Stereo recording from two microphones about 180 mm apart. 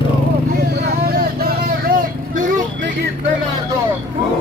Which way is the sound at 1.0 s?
55° right (ahead or behind).